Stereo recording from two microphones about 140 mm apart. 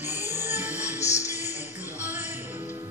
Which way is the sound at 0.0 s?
15° right (ahead or behind).